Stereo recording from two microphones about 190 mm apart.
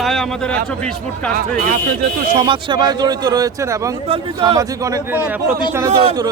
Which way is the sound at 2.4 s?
25° right (ahead or behind).